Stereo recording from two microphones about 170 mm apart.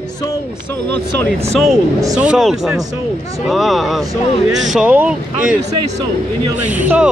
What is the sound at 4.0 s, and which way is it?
Speech, 20° right (ahead or behind).